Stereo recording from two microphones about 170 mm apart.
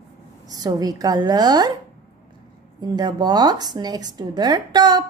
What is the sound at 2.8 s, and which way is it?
A woman's voice, 25° right (ahead or behind).